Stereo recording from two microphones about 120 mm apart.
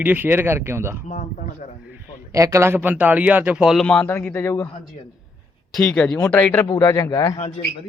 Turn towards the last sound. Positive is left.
turn(degrees=50)  # may be behind; listen again after turning